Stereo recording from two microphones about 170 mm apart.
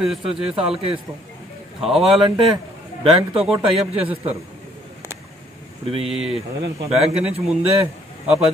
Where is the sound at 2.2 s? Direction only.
30° right (ahead or behind).